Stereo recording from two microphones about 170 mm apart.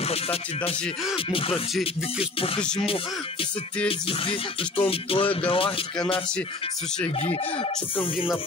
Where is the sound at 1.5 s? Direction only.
Centre (ahead or behind).